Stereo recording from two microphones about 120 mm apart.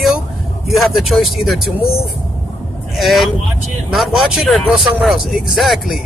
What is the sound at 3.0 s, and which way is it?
Speech, centre (ahead or behind).